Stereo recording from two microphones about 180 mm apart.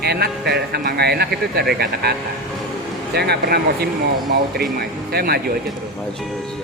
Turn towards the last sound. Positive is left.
turn(degrees=-60)  # may be behind; listen again after turning